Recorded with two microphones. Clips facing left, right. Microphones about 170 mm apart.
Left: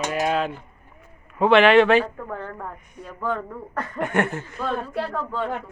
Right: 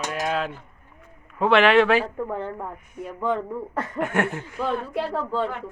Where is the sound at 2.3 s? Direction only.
20° right (ahead or behind).